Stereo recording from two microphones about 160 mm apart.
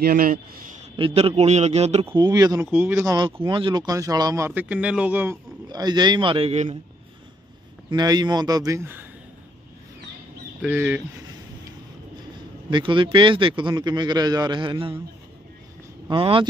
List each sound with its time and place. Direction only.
0.0 s speech: 65° right (ahead or behind)
0.9 s a man's voice: 35° right (ahead or behind)
2.1 s a man's voice: 25° right (ahead or behind)
3.4 s speech: 30° right (ahead or behind); by 5.4 s 10° right (ahead or behind)
5.7 s a man's voice: 25° right (ahead or behind); by 6.8 s 40° right (ahead or behind)
7.9 s a man's voice: 25° right (ahead or behind)
10.6 s speech: 10° right (ahead or behind)
12.6 s a man's voice: 30° right (ahead or behind)
16.1 s a man's voice: 35° right (ahead or behind)